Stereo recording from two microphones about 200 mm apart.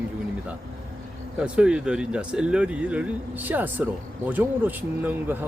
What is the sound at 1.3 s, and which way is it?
Speech, 5° right (ahead or behind).